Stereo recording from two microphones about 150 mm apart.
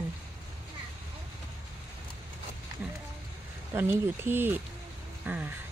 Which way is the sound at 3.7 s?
15° right (ahead or behind).